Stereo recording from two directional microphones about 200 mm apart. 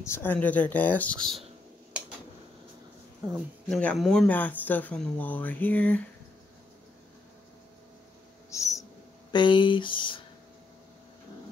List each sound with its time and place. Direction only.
0.0 s speech: 10° left (ahead or behind)
3.3 s speech: centre (ahead or behind)
8.5 s owl: 15° left (ahead or behind)
9.3 s speech: 25° left (ahead or behind)